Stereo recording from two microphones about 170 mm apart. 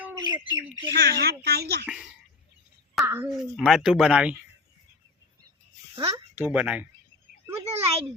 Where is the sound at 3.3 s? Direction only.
Centre (ahead or behind).